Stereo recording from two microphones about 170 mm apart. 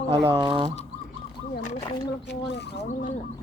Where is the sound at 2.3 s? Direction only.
90° left.